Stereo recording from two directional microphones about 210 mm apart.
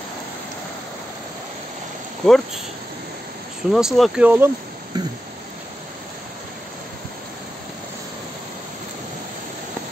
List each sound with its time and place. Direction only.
2.2 s speech: centre (ahead or behind)
3.7 s speech: centre (ahead or behind)
4.9 s a sound: 20° right (ahead or behind)